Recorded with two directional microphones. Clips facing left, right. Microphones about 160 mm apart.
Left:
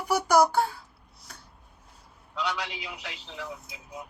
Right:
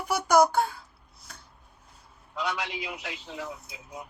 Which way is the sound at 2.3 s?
50° right (ahead or behind).